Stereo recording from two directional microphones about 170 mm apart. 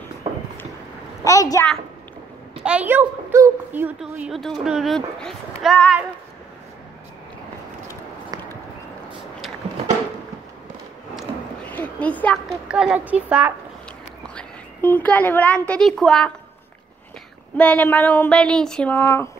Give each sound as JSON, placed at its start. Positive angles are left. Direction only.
{"t": 1.2, "sound": "a woman's voice", "side_deg": 20}
{"t": 2.5, "sound": "a woman's voice", "side_deg": -5}
{"t": 8.3, "sound": "a sound", "side_deg": -25}
{"t": 11.1, "sound": "a sound", "side_deg": 10}
{"t": 12.6, "sound": "a woman's voice", "side_deg": -5}
{"t": 14.2, "sound": "a woman's voice", "side_deg": 10}
{"t": 17.6, "sound": "speech", "side_deg": 10}